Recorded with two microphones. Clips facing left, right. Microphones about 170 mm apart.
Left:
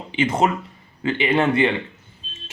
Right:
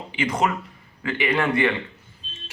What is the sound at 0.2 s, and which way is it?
Speech, 25° left (ahead or behind).